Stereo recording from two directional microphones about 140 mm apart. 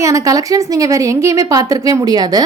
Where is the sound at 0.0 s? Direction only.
25° right (ahead or behind).